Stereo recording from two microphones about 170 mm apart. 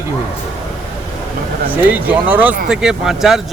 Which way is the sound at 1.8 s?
10° right (ahead or behind).